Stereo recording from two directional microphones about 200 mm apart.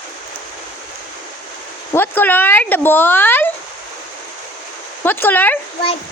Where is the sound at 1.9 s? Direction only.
10° left (ahead or behind).